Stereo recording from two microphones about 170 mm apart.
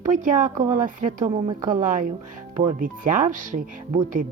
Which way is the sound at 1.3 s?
30° right (ahead or behind).